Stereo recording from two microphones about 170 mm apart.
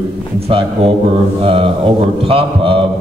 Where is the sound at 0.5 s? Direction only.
35° right (ahead or behind).